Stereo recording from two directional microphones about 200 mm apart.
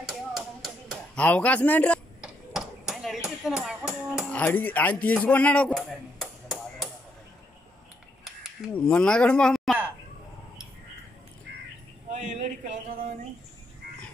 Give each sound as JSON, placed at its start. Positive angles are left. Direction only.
{"t": 1.1, "sound": "a man's voice", "side_deg": 5}
{"t": 2.2, "sound": "a sound", "side_deg": -5}
{"t": 3.3, "sound": "speech", "side_deg": 0}
{"t": 4.3, "sound": "speech", "side_deg": 10}
{"t": 8.7, "sound": "speech", "side_deg": 5}
{"t": 12.1, "sound": "a sound", "side_deg": -35}